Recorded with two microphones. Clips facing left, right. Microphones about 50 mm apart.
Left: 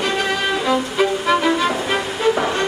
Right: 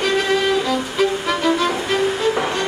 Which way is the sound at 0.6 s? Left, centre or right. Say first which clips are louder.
Left 1 dB; centre.